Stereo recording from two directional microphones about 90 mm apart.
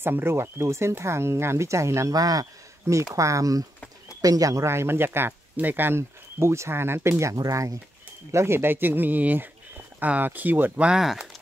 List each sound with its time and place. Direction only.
0.0 s speech: 25° right (ahead or behind); by 2.4 s 45° right (ahead or behind)
2.9 s speech: 30° right (ahead or behind)
10.9 s speech: 5° right (ahead or behind)